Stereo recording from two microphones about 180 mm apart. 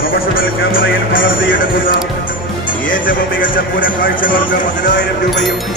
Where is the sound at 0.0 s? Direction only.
55° left (ahead or behind).